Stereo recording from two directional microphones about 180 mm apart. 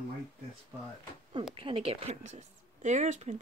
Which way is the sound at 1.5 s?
30° right (ahead or behind).